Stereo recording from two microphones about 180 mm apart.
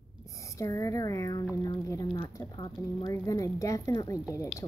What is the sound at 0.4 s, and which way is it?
Speech, 15° left (ahead or behind).